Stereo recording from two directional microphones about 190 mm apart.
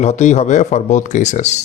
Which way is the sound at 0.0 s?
35° left (ahead or behind).